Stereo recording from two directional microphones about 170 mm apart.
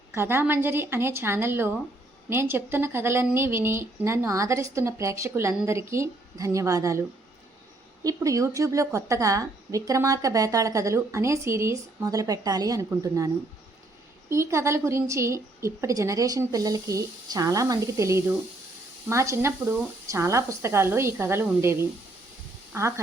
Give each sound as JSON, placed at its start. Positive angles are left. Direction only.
{"t": 0.1, "sound": "speech", "side_deg": -15}
{"t": 8.0, "sound": "a woman's voice", "side_deg": -20}